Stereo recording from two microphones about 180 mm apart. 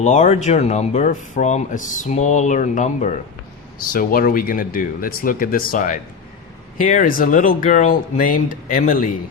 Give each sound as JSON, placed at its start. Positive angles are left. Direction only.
{"t": 0.0, "sound": "speech", "side_deg": 40}
{"t": 3.8, "sound": "speech", "side_deg": 55}